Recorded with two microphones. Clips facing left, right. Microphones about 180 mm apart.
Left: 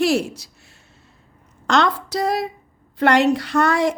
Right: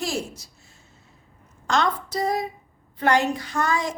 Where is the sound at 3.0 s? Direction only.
70° left (ahead or behind).